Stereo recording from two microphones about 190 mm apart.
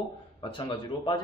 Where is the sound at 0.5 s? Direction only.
25° left (ahead or behind).